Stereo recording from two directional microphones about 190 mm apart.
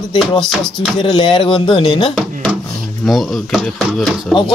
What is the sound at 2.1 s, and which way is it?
Speech, centre (ahead or behind).